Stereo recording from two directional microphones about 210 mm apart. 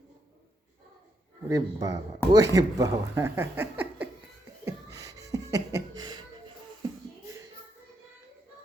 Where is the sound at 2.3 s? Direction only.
15° right (ahead or behind).